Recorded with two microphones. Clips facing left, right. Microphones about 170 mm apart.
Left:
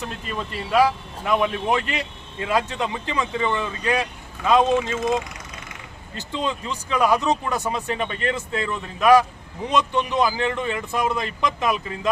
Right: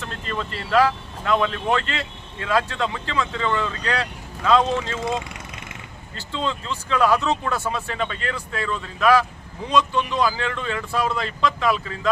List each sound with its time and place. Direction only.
0.0 s speech: 10° left (ahead or behind)
6.1 s speech: 15° left (ahead or behind)